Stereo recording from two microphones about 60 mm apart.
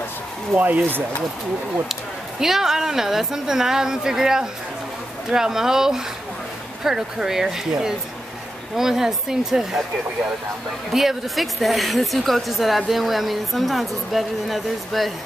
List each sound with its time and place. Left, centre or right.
0.6 s speech: right
2.4 s a woman's voice: centre
10.9 s a woman's voice: centre